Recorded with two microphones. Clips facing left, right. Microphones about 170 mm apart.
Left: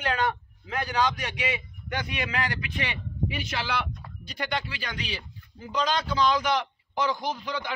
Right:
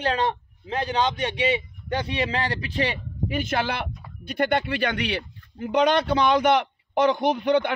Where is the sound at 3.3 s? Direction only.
50° right (ahead or behind).